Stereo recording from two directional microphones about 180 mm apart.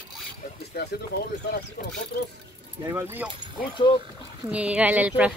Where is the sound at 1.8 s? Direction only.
50° left (ahead or behind).